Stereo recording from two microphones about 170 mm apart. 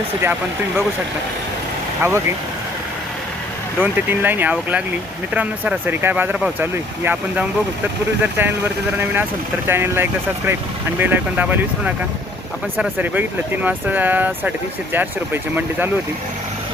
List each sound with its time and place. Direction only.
2.0 s speech: 15° right (ahead or behind)
3.8 s speech: 10° right (ahead or behind)